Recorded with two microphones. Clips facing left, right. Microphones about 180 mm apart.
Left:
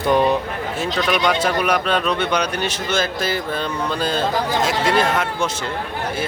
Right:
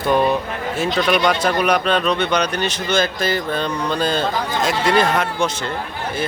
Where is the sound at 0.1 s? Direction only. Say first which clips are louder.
Even; 15° left (ahead or behind).